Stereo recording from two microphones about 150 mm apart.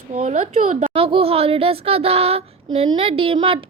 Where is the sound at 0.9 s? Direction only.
40° right (ahead or behind).